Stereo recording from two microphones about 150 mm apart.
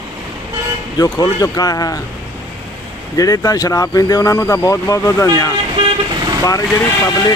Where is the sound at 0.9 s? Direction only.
25° left (ahead or behind).